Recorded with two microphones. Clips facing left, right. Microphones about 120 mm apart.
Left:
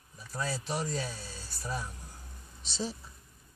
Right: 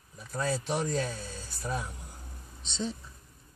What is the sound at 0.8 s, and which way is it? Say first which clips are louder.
Speech: right 4 dB; 5° left (ahead or behind).